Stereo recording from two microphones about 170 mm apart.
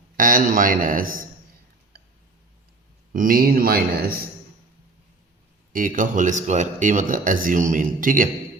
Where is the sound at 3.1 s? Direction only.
55° right (ahead or behind).